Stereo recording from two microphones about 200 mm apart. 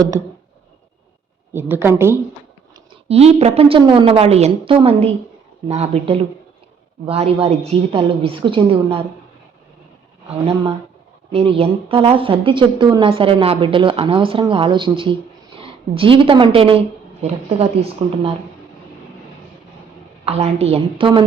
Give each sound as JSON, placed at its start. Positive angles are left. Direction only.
{"t": 0.1, "sound": "a woman's voice", "side_deg": -15}
{"t": 1.5, "sound": "a woman's voice", "side_deg": -10}
{"t": 3.1, "sound": "a woman's voice", "side_deg": -30}
{"t": 10.4, "sound": "a woman's voice", "side_deg": -25}
{"t": 20.2, "sound": "speech", "side_deg": -30}